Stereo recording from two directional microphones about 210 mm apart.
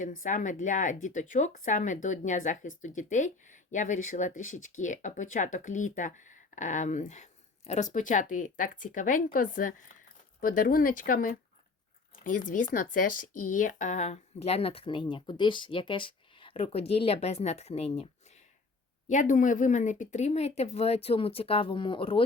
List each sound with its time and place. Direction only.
0.0 s a woman's voice: 35° left (ahead or behind)